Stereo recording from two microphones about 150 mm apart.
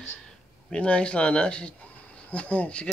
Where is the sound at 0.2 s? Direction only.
5° left (ahead or behind).